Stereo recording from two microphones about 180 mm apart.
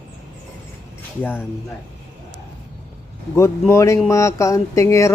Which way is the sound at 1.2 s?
10° left (ahead or behind).